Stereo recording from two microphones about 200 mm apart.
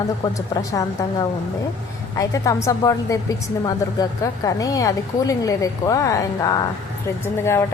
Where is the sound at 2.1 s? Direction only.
15° left (ahead or behind).